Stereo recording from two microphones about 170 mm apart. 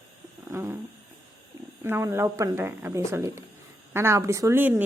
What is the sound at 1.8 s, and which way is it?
Speech, 15° right (ahead or behind).